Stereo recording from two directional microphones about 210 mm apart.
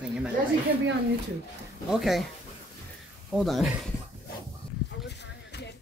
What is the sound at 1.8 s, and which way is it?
Speech, centre (ahead or behind).